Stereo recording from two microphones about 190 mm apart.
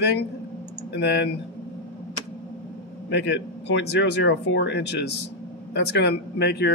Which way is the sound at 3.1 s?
65° left (ahead or behind).